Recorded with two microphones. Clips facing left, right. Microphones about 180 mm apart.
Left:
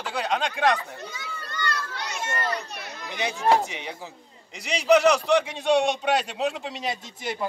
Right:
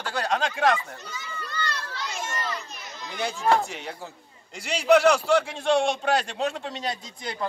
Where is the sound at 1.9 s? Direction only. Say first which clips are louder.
Left 2 dB; 65° left (ahead or behind).